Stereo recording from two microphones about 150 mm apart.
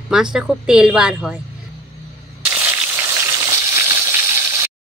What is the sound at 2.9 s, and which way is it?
Frying, 20° right (ahead or behind).